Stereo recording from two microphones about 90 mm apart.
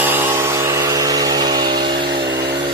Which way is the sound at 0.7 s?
45° right (ahead or behind).